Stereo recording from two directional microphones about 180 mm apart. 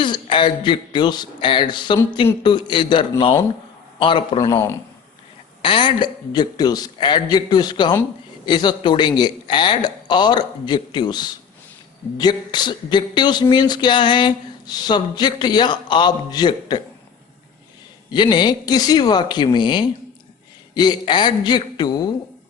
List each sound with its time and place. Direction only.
0.0 s a man's voice: 25° left (ahead or behind)
5.6 s speech: 25° left (ahead or behind)
18.1 s speech: 25° left (ahead or behind)